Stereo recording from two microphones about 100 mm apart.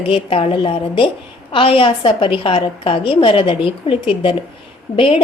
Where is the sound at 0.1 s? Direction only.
65° left (ahead or behind).